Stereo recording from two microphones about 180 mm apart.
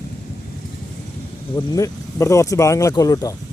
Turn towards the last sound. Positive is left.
turn(degrees=20)  # may be behind; listen again after turning